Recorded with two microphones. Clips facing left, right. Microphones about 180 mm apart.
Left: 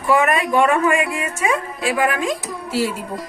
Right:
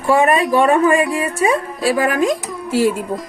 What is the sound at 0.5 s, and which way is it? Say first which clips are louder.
Speech: right 2 dB; 35° right (ahead or behind).